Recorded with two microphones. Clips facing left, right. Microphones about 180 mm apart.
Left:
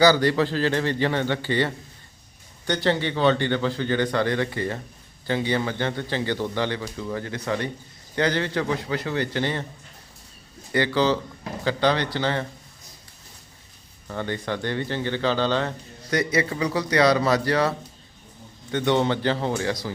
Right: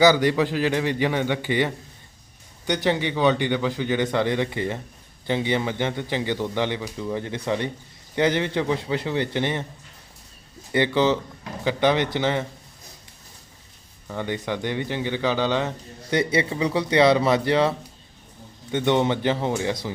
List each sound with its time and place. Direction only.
0.0 s speech: 15° right (ahead or behind)
10.7 s speech: 20° right (ahead or behind)
14.1 s speech: 15° right (ahead or behind)